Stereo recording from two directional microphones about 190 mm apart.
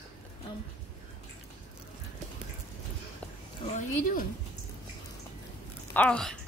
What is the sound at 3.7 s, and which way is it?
Speech, 45° left (ahead or behind).